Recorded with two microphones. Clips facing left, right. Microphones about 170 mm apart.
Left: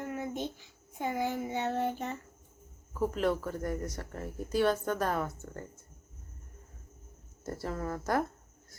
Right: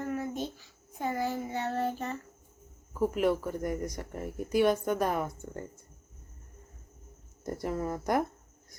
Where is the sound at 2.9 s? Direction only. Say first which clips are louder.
Right 3 dB; 10° right (ahead or behind).